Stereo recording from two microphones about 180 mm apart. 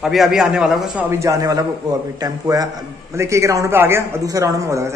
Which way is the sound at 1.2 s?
20° right (ahead or behind).